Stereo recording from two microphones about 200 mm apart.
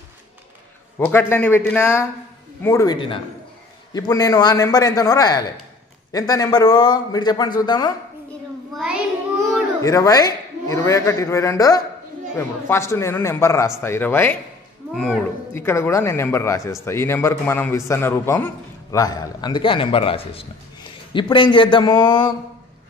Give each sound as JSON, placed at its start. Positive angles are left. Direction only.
{"t": 0.9, "sound": "a man's voice", "side_deg": 10}
{"t": 8.7, "sound": "child singing", "side_deg": -5}
{"t": 9.8, "sound": "a man's voice", "side_deg": 15}
{"t": 15.5, "sound": "a man's voice", "side_deg": 10}